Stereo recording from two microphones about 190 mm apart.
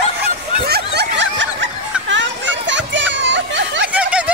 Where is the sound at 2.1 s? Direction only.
75° right (ahead or behind).